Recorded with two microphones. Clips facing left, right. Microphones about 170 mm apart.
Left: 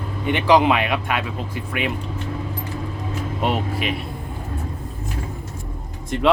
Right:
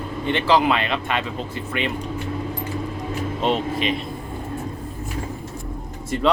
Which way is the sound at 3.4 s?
10° left (ahead or behind).